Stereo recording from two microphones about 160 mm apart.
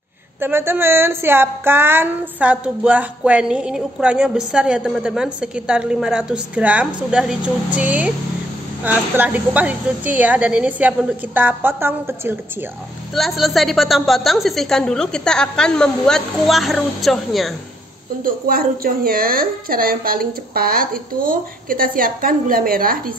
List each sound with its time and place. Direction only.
0.4 s speech: 15° right (ahead or behind)
13.1 s a woman's voice: centre (ahead or behind)
18.2 s a woman's voice: 65° right (ahead or behind)